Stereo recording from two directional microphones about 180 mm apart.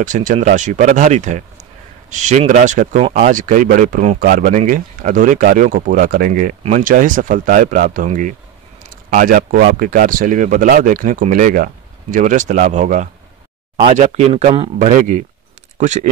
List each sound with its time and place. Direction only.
0.0 s speech: 45° right (ahead or behind)